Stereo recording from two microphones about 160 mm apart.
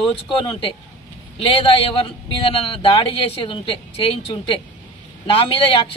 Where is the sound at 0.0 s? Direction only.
35° left (ahead or behind).